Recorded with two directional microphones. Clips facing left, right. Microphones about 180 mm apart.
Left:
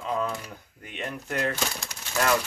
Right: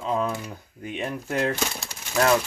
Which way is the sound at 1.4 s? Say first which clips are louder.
Right 2 dB; 25° right (ahead or behind).